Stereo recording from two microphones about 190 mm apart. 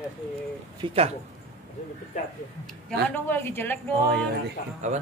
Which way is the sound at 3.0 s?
10° left (ahead or behind).